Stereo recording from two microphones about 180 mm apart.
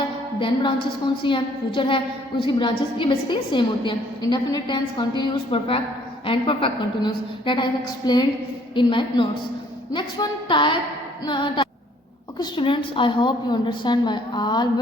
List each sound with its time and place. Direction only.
0.3 s a woman's voice: 25° left (ahead or behind)